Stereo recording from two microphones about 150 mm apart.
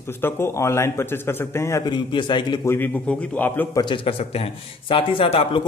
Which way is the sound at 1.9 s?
30° left (ahead or behind).